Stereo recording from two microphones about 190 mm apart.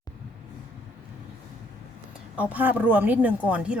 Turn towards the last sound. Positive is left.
turn(degrees=-5)  # may be behind; listen again after turning